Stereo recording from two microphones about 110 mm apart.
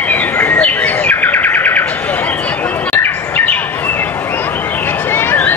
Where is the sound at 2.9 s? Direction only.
15° left (ahead or behind).